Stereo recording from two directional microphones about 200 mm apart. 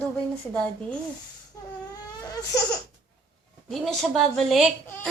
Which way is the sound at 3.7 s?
Centre (ahead or behind).